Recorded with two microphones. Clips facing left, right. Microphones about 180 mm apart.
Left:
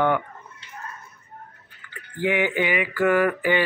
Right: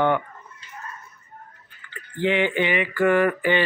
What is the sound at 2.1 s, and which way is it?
Speech, 10° left (ahead or behind).